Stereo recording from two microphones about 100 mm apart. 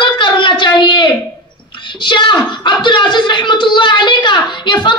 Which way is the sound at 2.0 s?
55° left (ahead or behind).